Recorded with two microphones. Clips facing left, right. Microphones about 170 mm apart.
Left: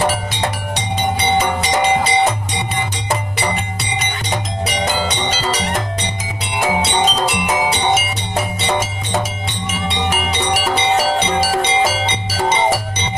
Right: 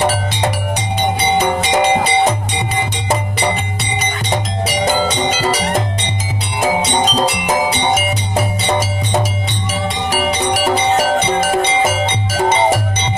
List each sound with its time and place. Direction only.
5.3 s music: 10° right (ahead or behind)
6.6 s music: 40° right (ahead or behind)
9.7 s music: 40° right (ahead or behind)
11.3 s music: 50° right (ahead or behind)